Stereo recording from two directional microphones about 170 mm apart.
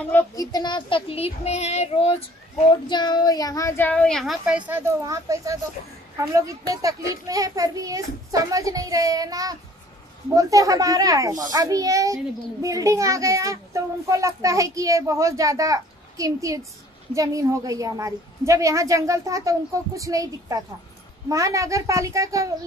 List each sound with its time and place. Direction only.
0.1 s child singing: 20° left (ahead or behind)
2.9 s a woman's voice: 25° left (ahead or behind); by 22.5 s 20° right (ahead or behind)